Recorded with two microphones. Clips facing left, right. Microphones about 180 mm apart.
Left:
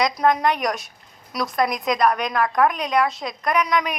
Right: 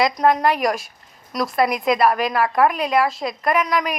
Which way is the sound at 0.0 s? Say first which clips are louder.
Right 2 dB; centre (ahead or behind).